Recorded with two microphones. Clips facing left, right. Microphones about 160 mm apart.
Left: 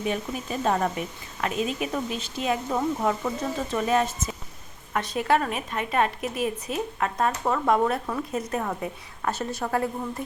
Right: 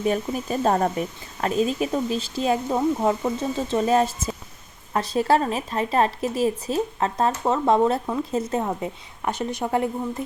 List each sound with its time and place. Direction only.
0.0 s speech: 40° right (ahead or behind); by 9.9 s 20° right (ahead or behind)